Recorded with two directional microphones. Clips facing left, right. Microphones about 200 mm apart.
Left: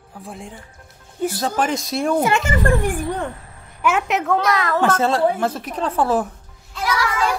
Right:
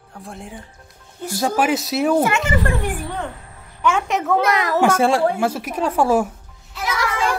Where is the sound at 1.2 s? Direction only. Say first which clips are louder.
Right 2 dB; 10° right (ahead or behind).